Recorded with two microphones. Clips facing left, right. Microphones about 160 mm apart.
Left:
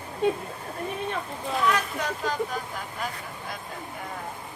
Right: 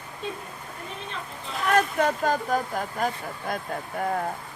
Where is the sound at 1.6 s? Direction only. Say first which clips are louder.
Right 6 dB; 50° right (ahead or behind).